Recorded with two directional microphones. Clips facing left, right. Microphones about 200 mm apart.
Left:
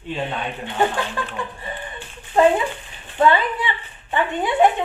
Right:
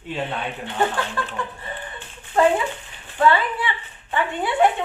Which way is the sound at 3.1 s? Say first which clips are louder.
Left 1 dB; 20° left (ahead or behind).